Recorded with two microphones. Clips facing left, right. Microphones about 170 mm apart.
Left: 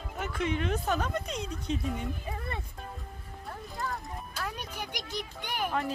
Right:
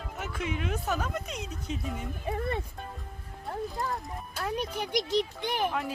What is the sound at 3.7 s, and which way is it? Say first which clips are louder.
Speech: right 3 dB; 25° right (ahead or behind).